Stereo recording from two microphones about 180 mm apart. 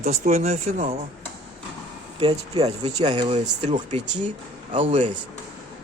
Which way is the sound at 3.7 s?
25° right (ahead or behind).